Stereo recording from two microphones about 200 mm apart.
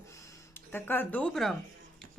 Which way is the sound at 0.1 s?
15° left (ahead or behind).